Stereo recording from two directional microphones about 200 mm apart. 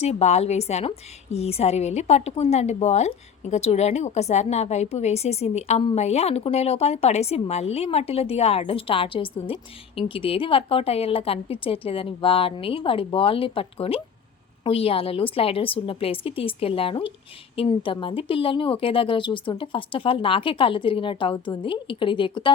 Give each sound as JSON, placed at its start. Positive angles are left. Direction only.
{"t": 0.0, "sound": "a woman's voice", "side_deg": 35}